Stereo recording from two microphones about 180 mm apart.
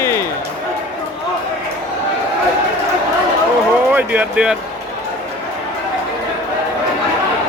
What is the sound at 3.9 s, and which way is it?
Speech, 10° right (ahead or behind).